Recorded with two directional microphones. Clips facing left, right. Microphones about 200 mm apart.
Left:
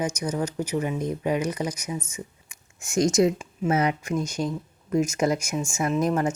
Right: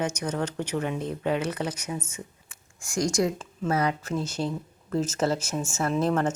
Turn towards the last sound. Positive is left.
turn(degrees=10)  # may be behind; listen again after turning